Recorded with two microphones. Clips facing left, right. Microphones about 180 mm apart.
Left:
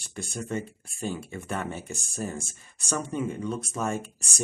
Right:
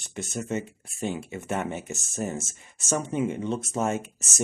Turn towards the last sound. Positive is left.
turn(degrees=-25)  # may be behind; listen again after turning